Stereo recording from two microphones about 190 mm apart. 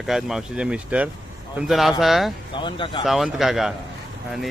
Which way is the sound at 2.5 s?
25° left (ahead or behind).